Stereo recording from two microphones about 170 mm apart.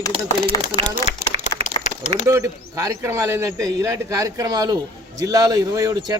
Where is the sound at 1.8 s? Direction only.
45° left (ahead or behind).